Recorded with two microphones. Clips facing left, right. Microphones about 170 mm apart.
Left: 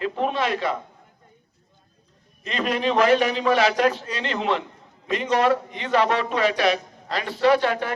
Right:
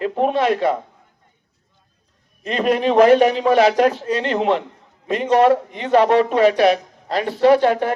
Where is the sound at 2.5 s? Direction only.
50° right (ahead or behind).